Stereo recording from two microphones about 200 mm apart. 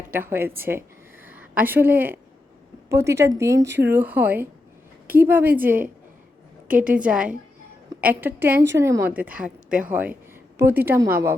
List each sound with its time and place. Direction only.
0.1 s a woman's voice: 10° right (ahead or behind)
3.7 s speech: 60° right (ahead or behind)
3.9 s a woman's voice: 10° right (ahead or behind)
6.7 s a woman's voice: 40° right (ahead or behind)
6.9 s a woman's voice: 5° right (ahead or behind)
9.6 s speech: 40° right (ahead or behind)
9.9 s a woman's voice: 10° right (ahead or behind)